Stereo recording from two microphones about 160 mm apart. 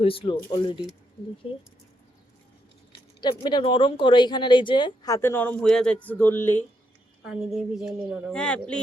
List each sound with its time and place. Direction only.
0.0 s speech: 35° left (ahead or behind)
3.2 s speech: 30° left (ahead or behind); by 6.7 s 15° left (ahead or behind)
7.3 s a woman's voice: 5° right (ahead or behind)